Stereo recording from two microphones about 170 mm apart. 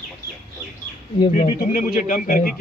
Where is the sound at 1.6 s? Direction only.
50° left (ahead or behind).